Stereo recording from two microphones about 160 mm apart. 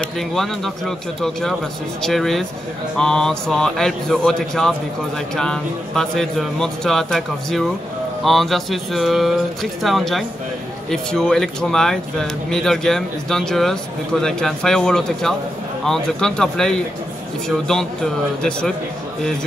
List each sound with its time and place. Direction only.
0.0 s speech: centre (ahead or behind)